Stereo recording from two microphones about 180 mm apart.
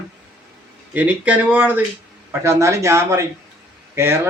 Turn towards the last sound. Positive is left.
turn(degrees=-15)  # may be behind; listen again after turning